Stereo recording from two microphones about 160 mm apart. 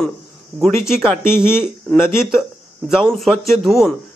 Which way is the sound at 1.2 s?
15° left (ahead or behind).